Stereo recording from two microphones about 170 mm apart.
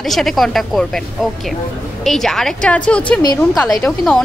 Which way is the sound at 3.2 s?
25° left (ahead or behind).